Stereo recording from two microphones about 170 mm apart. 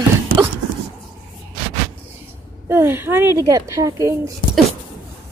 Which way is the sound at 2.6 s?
15° right (ahead or behind).